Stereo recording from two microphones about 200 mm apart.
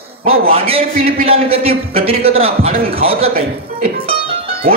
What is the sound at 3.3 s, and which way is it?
Speech, 40° right (ahead or behind).